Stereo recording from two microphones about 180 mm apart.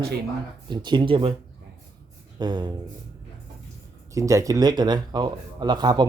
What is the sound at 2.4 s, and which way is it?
Speech, 25° right (ahead or behind).